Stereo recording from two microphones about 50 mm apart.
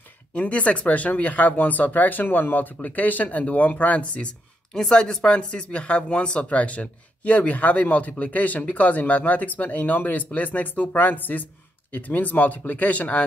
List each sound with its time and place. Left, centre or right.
0.3 s speech: left
4.7 s speech: centre; by 13.2 s left